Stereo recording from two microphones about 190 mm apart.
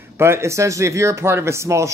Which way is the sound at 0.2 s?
15° right (ahead or behind).